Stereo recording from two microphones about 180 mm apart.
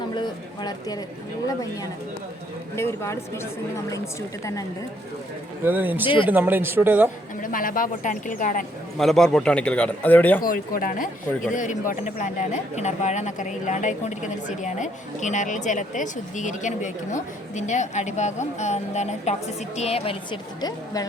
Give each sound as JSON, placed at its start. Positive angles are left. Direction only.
{"t": 0.2, "sound": "speech", "side_deg": 25}
{"t": 2.7, "sound": "speech", "side_deg": 15}
{"t": 5.6, "sound": "speech", "side_deg": -10}
{"t": 7.4, "sound": "speech", "side_deg": 50}
{"t": 9.0, "sound": "speech", "side_deg": 0}
{"t": 10.4, "sound": "a woman's voice", "side_deg": 50}